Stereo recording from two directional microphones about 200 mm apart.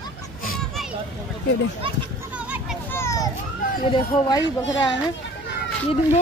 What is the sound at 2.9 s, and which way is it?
Children playing, 15° left (ahead or behind).